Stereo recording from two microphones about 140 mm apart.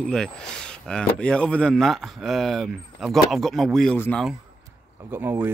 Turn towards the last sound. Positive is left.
turn(degrees=-15)  # may be behind; listen again after turning